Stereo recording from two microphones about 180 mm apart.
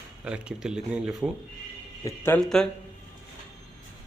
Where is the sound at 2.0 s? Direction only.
15° left (ahead or behind).